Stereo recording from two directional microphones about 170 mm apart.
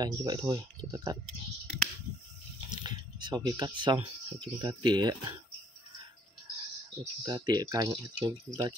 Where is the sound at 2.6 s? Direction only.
25° right (ahead or behind).